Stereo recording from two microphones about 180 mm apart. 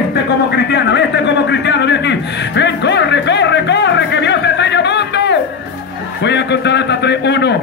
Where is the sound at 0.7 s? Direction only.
75° left (ahead or behind).